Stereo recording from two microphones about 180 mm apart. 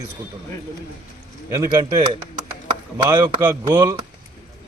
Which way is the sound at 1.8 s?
25° right (ahead or behind).